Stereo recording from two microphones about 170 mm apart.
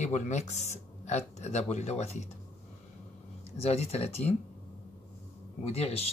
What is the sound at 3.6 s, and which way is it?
Speech, 35° left (ahead or behind).